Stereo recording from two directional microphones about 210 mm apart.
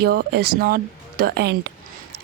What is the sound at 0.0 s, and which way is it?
A woman's voice, 50° right (ahead or behind).